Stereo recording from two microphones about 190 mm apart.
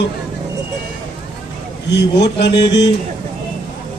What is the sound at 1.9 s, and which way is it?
Speech, 65° left (ahead or behind).